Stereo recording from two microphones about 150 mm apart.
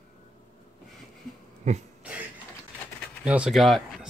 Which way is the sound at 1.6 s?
50° right (ahead or behind).